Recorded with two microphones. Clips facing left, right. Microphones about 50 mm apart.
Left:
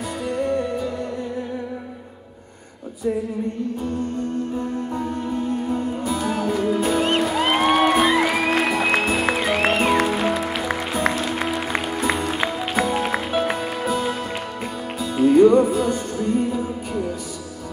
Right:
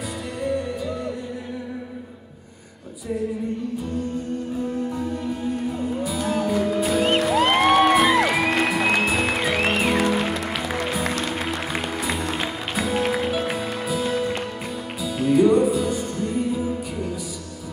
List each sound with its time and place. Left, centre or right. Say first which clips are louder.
6.0 s music: even; centre